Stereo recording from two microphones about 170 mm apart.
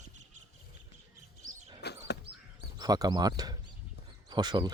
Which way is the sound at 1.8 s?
80° left.